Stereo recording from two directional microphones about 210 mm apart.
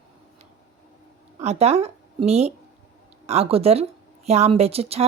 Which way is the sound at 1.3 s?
30° right (ahead or behind).